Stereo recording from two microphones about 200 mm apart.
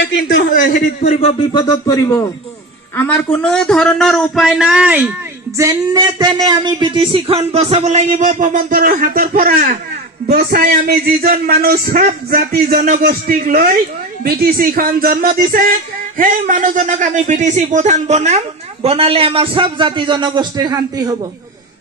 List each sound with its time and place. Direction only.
0.0 s a man's voice: 60° left (ahead or behind)
0.5 s speech: 45° left (ahead or behind); by 5.1 s 5° right (ahead or behind)
5.6 s a man's voice: 20° right (ahead or behind)